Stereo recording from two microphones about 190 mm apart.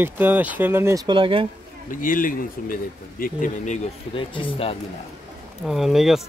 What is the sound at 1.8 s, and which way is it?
Speech, 45° left (ahead or behind).